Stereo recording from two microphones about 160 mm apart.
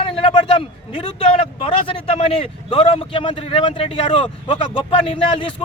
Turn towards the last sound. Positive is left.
turn(degrees=35)  # may be behind; listen again after turning